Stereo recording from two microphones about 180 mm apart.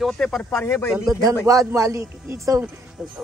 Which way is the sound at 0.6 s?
15° left (ahead or behind).